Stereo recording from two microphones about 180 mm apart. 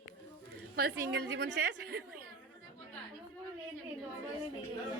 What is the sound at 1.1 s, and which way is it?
Speech, 75° right (ahead or behind).